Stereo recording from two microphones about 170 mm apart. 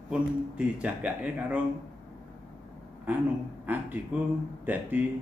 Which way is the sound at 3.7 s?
10° right (ahead or behind).